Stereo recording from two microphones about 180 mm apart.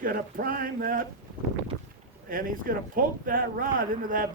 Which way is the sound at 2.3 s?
50° right (ahead or behind).